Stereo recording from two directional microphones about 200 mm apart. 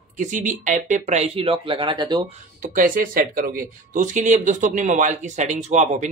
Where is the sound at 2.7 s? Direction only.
45° right (ahead or behind).